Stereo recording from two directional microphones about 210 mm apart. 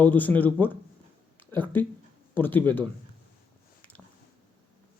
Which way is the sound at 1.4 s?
10° left (ahead or behind).